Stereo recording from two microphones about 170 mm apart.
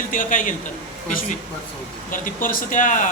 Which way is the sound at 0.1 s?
50° left (ahead or behind).